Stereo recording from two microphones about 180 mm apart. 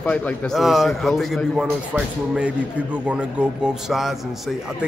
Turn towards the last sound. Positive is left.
turn(degrees=0)  # may be behind; listen again after turning